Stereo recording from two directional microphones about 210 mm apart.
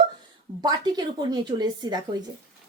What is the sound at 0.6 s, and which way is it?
A woman's voice, 20° right (ahead or behind).